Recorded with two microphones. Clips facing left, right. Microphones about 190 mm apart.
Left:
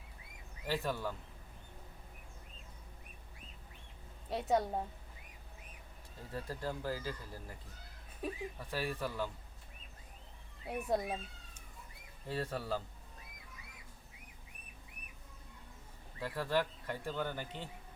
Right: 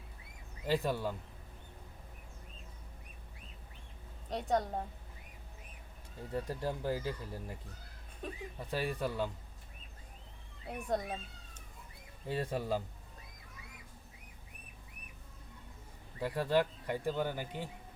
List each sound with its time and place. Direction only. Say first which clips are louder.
0.7 s speech: right 4 dB; 15° right (ahead or behind)
4.3 s a woman's voice: even; 5° left (ahead or behind)
6.3 s speech: right 4 dB; 20° right (ahead or behind)
8.2 s speech: left 3 dB; 5° left (ahead or behind)
8.5 s speech: right 3 dB; 15° right (ahead or behind)
10.7 s speech: left 1 dB; 5° left (ahead or behind)
12.3 s speech: right 3 dB; 15° right (ahead or behind)
16.2 s speech: right 4 dB; 15° right (ahead or behind)